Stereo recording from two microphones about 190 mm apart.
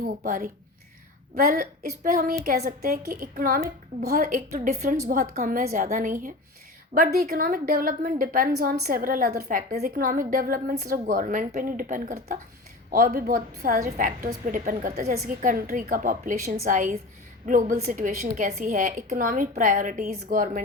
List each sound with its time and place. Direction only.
0.0 s a woman's voice: 45° right (ahead or behind)